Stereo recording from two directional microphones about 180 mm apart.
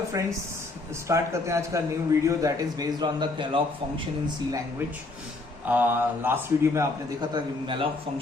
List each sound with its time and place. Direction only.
0.1 s a man's voice: 20° right (ahead or behind)
5.6 s a man's voice: 10° right (ahead or behind); by 7.9 s 25° right (ahead or behind)